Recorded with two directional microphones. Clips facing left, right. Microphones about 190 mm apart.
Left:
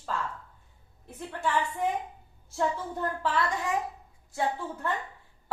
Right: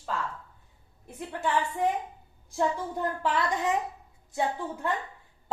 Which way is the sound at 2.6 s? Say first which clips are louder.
Right 1 dB; 15° right (ahead or behind).